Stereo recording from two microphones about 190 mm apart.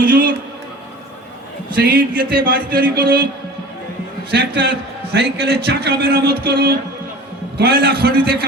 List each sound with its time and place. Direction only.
0.0 s a man's voice: 50° right (ahead or behind)
1.7 s speech: 50° right (ahead or behind)
5.1 s a man's voice: 60° right (ahead or behind)